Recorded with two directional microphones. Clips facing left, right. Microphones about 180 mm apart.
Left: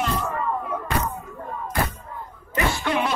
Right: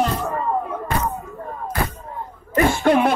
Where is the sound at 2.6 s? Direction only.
50° right (ahead or behind).